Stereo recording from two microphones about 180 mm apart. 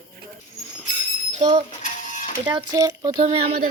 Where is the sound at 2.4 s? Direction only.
25° right (ahead or behind).